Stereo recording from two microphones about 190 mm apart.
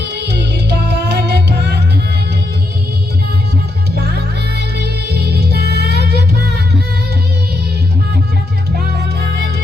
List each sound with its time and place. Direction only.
0.0 s music: 60° right (ahead or behind)
4.8 s music: 55° right (ahead or behind)